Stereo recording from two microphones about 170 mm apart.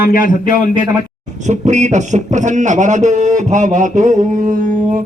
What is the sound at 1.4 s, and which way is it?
A man's voice, 45° right (ahead or behind).